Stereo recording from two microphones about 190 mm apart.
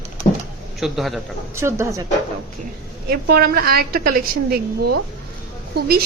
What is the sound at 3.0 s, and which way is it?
A woman's voice, 55° right (ahead or behind).